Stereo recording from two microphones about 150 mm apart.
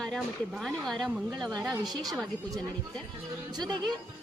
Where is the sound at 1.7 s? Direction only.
25° right (ahead or behind).